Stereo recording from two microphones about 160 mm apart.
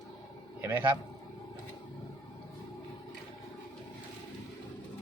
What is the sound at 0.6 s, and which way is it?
Speech, 10° right (ahead or behind).